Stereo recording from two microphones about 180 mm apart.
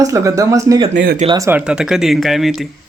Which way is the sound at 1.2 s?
20° right (ahead or behind).